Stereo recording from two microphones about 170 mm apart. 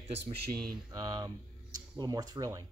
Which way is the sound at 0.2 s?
60° right (ahead or behind).